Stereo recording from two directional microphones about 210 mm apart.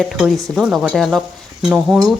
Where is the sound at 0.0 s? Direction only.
Centre (ahead or behind).